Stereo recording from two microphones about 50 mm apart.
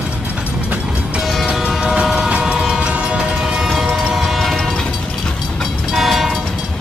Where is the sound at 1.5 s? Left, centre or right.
Centre.